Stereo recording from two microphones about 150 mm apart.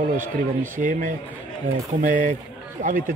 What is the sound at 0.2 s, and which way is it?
A man's voice, 60° right (ahead or behind).